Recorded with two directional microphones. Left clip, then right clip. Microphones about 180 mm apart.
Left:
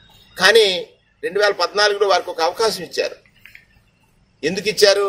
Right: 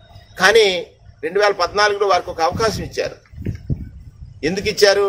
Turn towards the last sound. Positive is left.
turn(degrees=0)  # may be behind; listen again after turning